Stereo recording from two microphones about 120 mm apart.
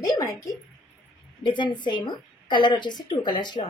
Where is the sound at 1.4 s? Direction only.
40° left (ahead or behind).